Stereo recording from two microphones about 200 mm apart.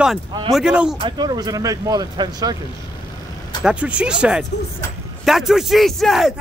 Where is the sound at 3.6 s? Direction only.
5° right (ahead or behind).